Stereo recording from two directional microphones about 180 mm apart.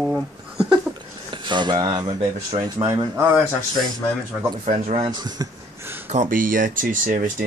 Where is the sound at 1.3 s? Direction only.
25° right (ahead or behind).